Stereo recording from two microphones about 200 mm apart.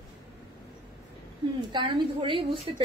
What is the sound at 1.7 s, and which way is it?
A woman's voice, 25° right (ahead or behind).